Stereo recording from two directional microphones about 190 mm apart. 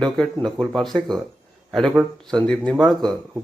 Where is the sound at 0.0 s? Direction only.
Centre (ahead or behind).